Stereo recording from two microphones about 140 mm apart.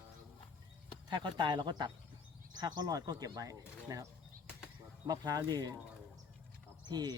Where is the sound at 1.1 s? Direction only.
35° right (ahead or behind).